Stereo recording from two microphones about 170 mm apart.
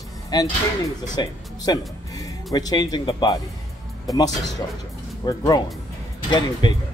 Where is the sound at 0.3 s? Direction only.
25° left (ahead or behind).